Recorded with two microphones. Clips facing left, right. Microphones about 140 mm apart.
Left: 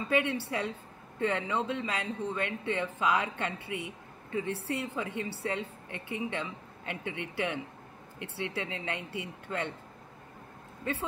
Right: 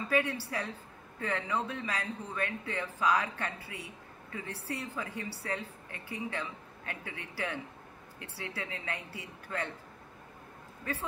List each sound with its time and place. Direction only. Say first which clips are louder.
0.1 s speech: left 2 dB; 25° left (ahead or behind)